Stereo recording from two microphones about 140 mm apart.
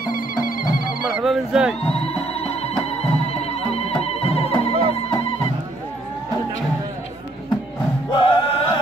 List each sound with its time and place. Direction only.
0.0 s music: 90° left
1.0 s a sound: 5° right (ahead or behind)
1.8 s music: 45° left (ahead or behind)
8.1 s music: 35° left (ahead or behind)